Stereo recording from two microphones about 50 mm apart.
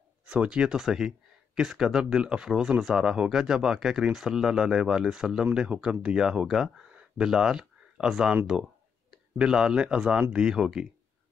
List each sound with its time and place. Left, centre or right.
0.2 s speech: right
5.4 s speech: right
6.9 s a sound: right
7.2 s speech: centre
9.4 s speech: centre